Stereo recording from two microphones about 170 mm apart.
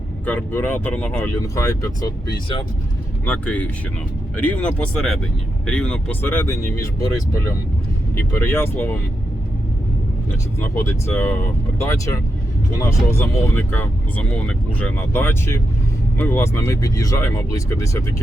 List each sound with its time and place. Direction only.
0.3 s speech: 10° left (ahead or behind)
3.2 s speech: 10° left (ahead or behind)
10.6 s speech: 15° left (ahead or behind)